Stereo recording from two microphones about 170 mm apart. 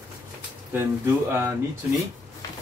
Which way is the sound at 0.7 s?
15° right (ahead or behind).